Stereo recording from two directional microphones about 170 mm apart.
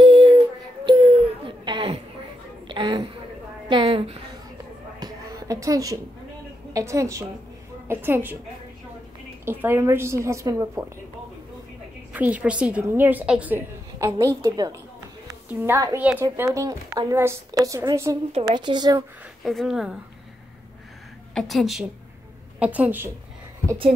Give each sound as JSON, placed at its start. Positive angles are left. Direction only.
{"t": 0.0, "sound": "child singing", "side_deg": -30}
{"t": 0.8, "sound": "a sound", "side_deg": -35}
{"t": 6.7, "sound": "a woman's voice", "side_deg": -20}
{"t": 9.4, "sound": "a woman's voice", "side_deg": -10}
{"t": 12.1, "sound": "a woman's voice", "side_deg": -10}
{"t": 18.3, "sound": "a woman's voice", "side_deg": -25}
{"t": 19.4, "sound": "speech", "side_deg": 0}
{"t": 21.4, "sound": "a woman's voice", "side_deg": 0}